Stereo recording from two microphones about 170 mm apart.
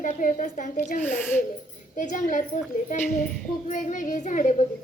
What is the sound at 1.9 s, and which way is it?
A woman's voice, 50° left (ahead or behind).